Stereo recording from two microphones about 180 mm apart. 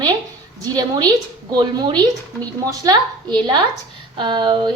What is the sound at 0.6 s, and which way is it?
A woman's voice, 20° right (ahead or behind).